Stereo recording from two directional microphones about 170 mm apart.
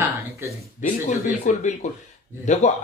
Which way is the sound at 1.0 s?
45° left (ahead or behind).